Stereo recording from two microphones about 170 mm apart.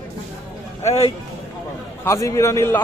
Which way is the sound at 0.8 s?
35° left (ahead or behind).